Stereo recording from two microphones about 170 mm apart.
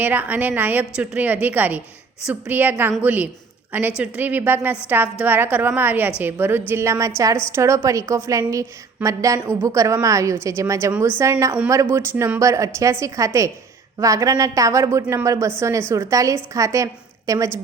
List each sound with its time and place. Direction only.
0.0 s a woman's voice: 10° right (ahead or behind)